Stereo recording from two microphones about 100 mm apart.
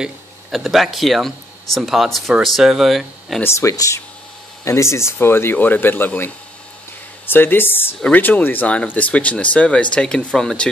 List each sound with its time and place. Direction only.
0.0 s speech: centre (ahead or behind)
3.4 s speech: 30° left (ahead or behind); by 10.7 s 5° left (ahead or behind)